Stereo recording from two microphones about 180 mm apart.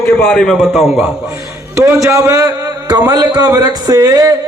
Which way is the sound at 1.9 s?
15° right (ahead or behind).